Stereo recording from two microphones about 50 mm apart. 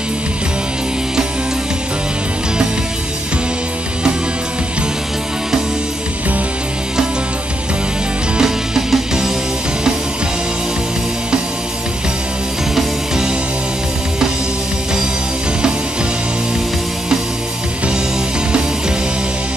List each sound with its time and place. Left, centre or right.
8.4 s music: centre
12.7 s music: centre